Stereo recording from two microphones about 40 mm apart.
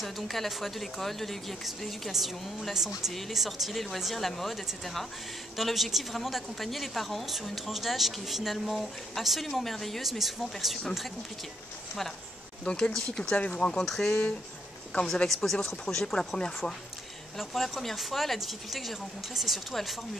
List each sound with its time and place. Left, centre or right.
0.0 s speech: centre
5.6 s speech: centre
12.6 s speech: left
12.9 s speech: centre
13.2 s speech: left
13.8 s speech: centre
15.2 s speech: centre
15.5 s speech: centre
17.4 s speech: centre